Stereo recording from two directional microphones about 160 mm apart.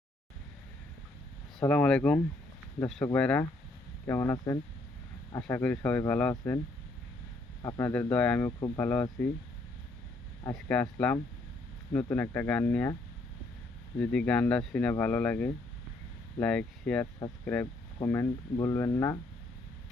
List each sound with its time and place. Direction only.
1.5 s speech: 5° left (ahead or behind)
7.8 s speech: 10° left (ahead or behind)
8.4 s speech: 20° left (ahead or behind)
8.8 s speech: 10° left (ahead or behind)
10.5 s speech: 10° left (ahead or behind)
14.0 s speech: 5° left (ahead or behind)